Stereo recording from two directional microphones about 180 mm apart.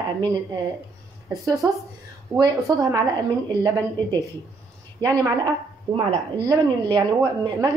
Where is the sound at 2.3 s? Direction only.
20° right (ahead or behind).